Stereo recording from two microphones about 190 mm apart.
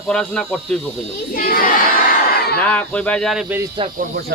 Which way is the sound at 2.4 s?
55° left (ahead or behind).